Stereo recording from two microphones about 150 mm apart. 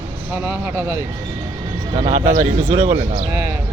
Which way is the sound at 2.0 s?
45° right (ahead or behind).